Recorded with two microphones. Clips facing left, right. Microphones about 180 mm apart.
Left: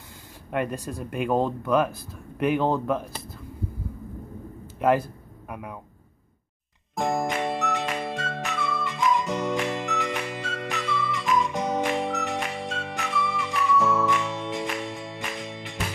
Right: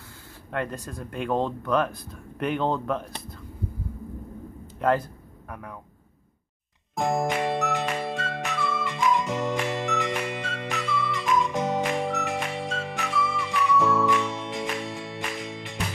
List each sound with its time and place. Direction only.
0.5 s speech: 10° left (ahead or behind)
4.7 s a sound: 10° left (ahead or behind)
7.0 s music: centre (ahead or behind)